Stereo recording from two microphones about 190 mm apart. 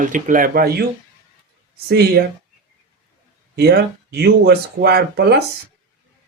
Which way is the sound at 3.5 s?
55° right (ahead or behind).